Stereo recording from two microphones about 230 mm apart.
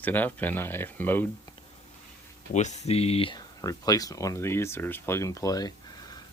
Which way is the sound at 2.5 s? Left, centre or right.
Left.